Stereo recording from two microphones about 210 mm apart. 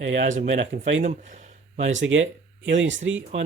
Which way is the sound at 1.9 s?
60° right (ahead or behind).